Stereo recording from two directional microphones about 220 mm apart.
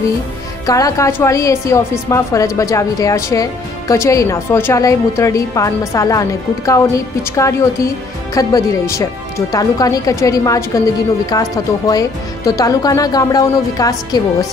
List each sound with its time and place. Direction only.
0.7 s a woman's voice: 15° left (ahead or behind)